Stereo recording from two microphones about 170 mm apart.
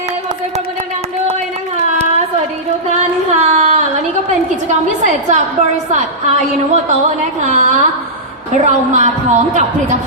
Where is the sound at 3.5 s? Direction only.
40° right (ahead or behind).